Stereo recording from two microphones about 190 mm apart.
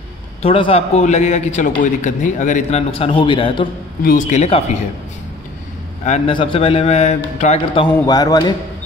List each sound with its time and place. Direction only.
0.4 s a man's voice: 30° left (ahead or behind)
4.0 s a man's voice: 45° left (ahead or behind)
6.0 s a man's voice: 35° left (ahead or behind)